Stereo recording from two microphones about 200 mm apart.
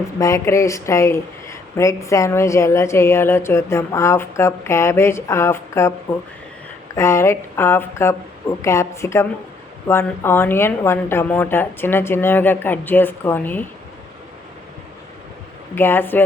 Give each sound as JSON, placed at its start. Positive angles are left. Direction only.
{"t": 0.2, "sound": "speech", "side_deg": 15}
{"t": 6.9, "sound": "speech", "side_deg": 15}
{"t": 15.7, "sound": "speech", "side_deg": 10}